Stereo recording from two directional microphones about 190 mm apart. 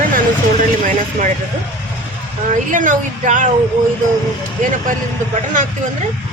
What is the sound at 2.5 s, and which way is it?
Speech, 45° right (ahead or behind).